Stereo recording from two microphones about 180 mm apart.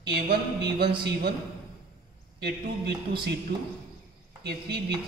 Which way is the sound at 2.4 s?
65° right (ahead or behind).